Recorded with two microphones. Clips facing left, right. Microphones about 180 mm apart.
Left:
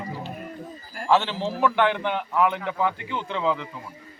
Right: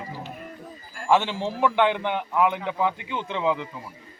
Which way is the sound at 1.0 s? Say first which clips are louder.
Even; 15° right (ahead or behind).